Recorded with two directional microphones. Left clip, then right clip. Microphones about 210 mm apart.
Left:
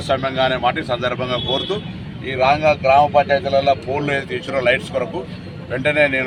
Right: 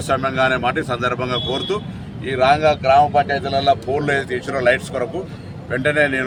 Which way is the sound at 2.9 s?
10° right (ahead or behind).